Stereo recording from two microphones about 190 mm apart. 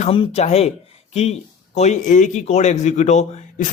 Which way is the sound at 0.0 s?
30° left (ahead or behind).